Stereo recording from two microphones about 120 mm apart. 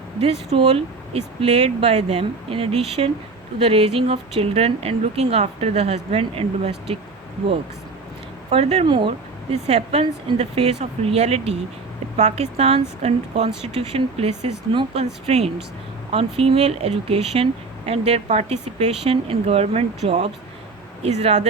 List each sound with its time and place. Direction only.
0.2 s speech: 55° right (ahead or behind)
8.4 s speech: 55° right (ahead or behind)
8.9 s speech: 45° right (ahead or behind); by 21.4 s 65° right (ahead or behind)